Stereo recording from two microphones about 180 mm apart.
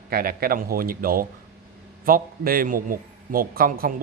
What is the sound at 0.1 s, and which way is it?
A man's voice, 55° right (ahead or behind).